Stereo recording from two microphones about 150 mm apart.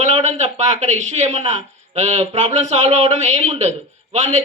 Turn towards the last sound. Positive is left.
turn(degrees=-50)  # may be behind; listen again after turning